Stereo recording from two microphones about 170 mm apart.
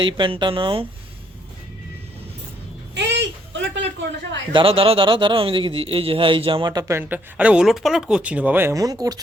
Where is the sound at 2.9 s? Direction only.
90° right.